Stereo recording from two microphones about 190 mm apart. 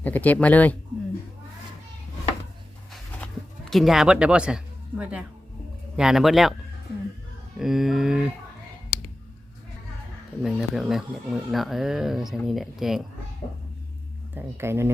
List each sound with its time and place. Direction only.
0.0 s speech: 10° left (ahead or behind)
3.2 s a sound: 5° left (ahead or behind)
3.7 s speech: centre (ahead or behind)
7.6 s speech: centre (ahead or behind)
10.4 s speech: centre (ahead or behind)
13.4 s a sound: 35° left (ahead or behind)
14.3 s speech: 15° right (ahead or behind)